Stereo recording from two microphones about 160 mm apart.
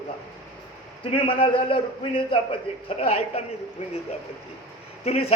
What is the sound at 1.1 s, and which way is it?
Speech, 35° left (ahead or behind).